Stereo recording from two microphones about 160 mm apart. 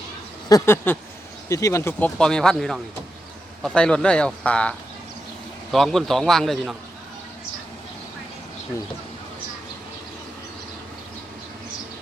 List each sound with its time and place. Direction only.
0.4 s a man's voice: 20° left (ahead or behind)
5.7 s a man's voice: centre (ahead or behind)